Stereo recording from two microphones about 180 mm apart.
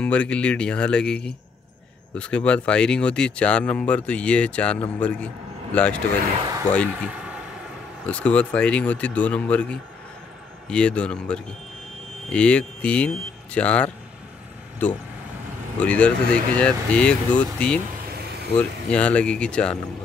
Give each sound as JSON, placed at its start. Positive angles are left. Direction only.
{"t": 0.0, "sound": "a man's voice", "side_deg": 5}
{"t": 6.9, "sound": "vehicle", "side_deg": -5}
{"t": 8.1, "sound": "speech", "side_deg": 5}
{"t": 15.8, "sound": "speech", "side_deg": 5}
{"t": 18.1, "sound": "vehicle", "side_deg": -65}
{"t": 18.6, "sound": "speech", "side_deg": 5}